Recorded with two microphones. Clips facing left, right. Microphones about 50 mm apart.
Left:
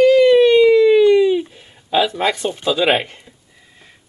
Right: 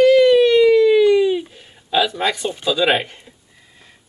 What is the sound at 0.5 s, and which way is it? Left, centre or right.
Siren, left.